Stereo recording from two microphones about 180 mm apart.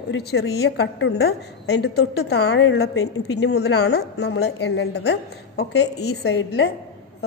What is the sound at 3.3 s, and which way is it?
Speech, 70° left (ahead or behind).